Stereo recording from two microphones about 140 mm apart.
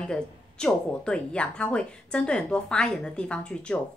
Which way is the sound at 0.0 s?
5° left (ahead or behind).